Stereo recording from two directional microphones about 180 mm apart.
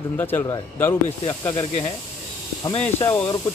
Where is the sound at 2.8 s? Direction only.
10° left (ahead or behind).